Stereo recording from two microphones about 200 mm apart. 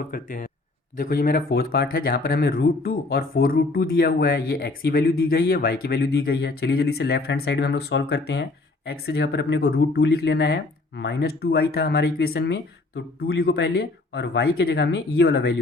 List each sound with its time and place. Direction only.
0.1 s speech: 45° left (ahead or behind)